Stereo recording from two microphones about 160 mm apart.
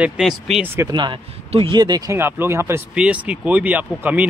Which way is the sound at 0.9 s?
30° right (ahead or behind).